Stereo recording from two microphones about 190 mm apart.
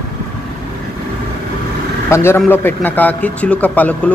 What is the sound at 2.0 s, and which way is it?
A man's voice, 15° left (ahead or behind).